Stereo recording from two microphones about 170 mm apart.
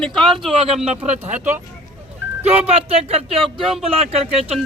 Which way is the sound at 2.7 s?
35° right (ahead or behind).